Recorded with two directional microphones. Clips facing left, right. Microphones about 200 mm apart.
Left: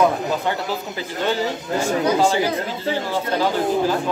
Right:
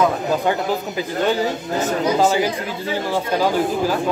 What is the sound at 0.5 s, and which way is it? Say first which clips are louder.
Speech: right 4 dB; 15° right (ahead or behind).